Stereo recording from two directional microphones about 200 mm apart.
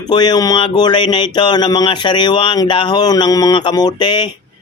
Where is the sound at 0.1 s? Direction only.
20° left (ahead or behind).